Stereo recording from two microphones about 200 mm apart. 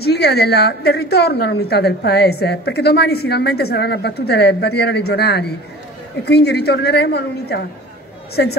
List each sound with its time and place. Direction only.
0.0 s a woman's voice: 55° left (ahead or behind)